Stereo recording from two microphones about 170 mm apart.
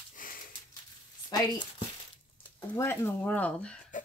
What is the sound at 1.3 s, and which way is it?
Speech, 25° left (ahead or behind).